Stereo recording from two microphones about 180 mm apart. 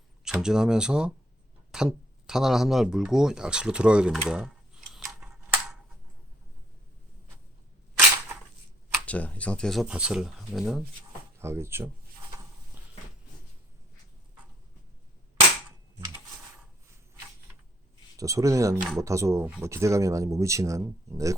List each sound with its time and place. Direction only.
0.3 s speech: 5° right (ahead or behind)
9.0 s speech: 10° left (ahead or behind)
11.3 s speech: 15° right (ahead or behind)
18.2 s speech: 20° right (ahead or behind)